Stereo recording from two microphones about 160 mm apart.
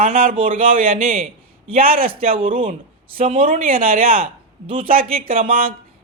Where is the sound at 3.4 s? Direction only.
60° right (ahead or behind).